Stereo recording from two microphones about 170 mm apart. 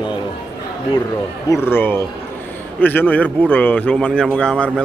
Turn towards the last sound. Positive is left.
turn(degrees=5)  # may be behind; listen again after turning